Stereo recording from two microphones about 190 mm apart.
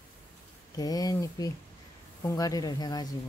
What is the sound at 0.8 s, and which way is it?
Speech, 20° left (ahead or behind).